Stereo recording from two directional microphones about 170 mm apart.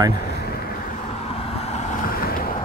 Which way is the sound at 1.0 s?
35° left (ahead or behind).